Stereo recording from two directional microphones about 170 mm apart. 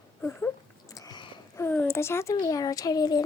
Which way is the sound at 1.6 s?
15° left (ahead or behind).